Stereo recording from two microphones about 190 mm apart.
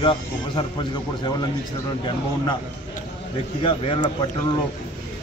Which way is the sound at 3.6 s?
25° left (ahead or behind).